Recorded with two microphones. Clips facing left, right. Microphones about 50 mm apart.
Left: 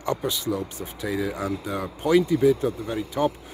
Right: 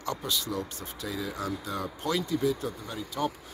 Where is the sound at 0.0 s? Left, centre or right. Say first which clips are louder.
Left 6 dB; left.